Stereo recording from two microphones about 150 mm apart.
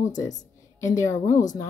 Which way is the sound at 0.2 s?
20° left (ahead or behind).